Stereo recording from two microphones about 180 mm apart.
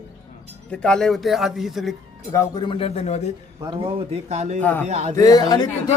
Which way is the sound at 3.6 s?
25° right (ahead or behind).